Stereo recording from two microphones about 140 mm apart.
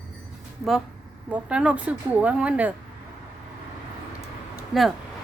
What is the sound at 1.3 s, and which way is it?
Speech, 5° right (ahead or behind).